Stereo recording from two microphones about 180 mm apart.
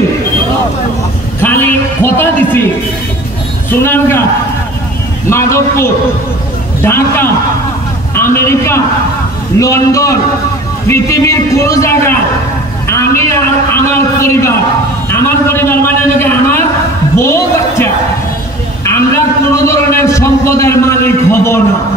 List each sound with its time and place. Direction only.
1.4 s a sound: 10° left (ahead or behind)
3.8 s a man's voice: 10° left (ahead or behind)
5.3 s a man's voice: 15° left (ahead or behind)
12.8 s a sound: 15° left (ahead or behind)
13.8 s a man's voice: 15° left (ahead or behind)
18.9 s a man's voice: 15° left (ahead or behind)